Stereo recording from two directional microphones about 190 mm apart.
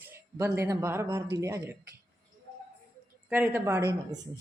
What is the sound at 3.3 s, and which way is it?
Speech, 10° right (ahead or behind).